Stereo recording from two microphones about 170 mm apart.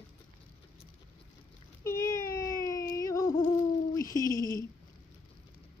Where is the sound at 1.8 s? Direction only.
15° left (ahead or behind).